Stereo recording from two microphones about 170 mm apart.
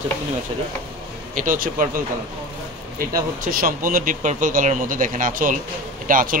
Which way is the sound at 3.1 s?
55° right (ahead or behind).